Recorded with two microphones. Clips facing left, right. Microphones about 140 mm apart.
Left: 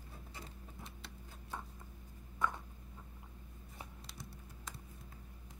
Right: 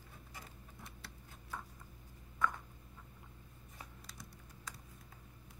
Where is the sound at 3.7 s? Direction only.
25° left (ahead or behind).